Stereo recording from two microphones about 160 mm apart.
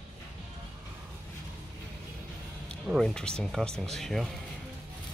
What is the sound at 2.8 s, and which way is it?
Speech, centre (ahead or behind).